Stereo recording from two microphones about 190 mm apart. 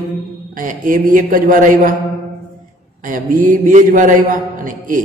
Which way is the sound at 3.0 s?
45° right (ahead or behind).